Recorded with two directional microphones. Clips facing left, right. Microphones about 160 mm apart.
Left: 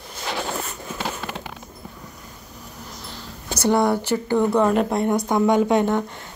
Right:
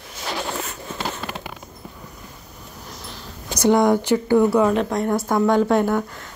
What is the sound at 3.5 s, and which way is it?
Speech, 15° right (ahead or behind).